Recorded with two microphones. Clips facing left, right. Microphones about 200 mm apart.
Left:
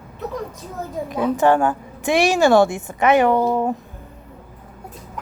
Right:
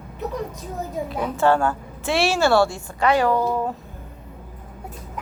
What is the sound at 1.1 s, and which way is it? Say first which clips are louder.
A woman's voice: left 3 dB; 15° left (ahead or behind).